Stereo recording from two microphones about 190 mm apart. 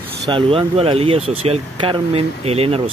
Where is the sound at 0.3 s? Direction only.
30° right (ahead or behind).